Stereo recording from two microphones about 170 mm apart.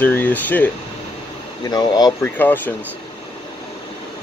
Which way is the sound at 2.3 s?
10° left (ahead or behind).